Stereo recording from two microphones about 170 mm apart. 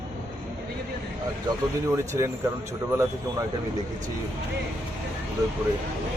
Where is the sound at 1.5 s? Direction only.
20° right (ahead or behind).